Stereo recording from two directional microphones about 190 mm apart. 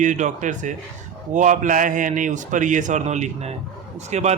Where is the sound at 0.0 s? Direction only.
40° right (ahead or behind).